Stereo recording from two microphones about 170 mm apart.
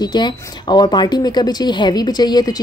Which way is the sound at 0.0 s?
25° left (ahead or behind).